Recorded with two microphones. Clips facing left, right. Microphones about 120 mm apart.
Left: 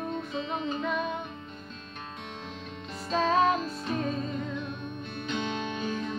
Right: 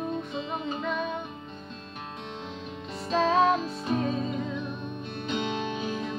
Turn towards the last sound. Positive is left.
turn(degrees=-5)  # may be behind; listen again after turning